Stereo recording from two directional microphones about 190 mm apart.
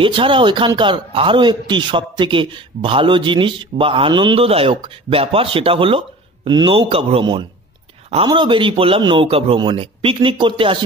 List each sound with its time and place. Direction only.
0.0 s a man's voice: 25° right (ahead or behind)